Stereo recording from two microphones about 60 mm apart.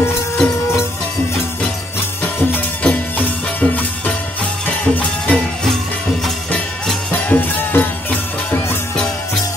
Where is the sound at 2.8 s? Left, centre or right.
Left.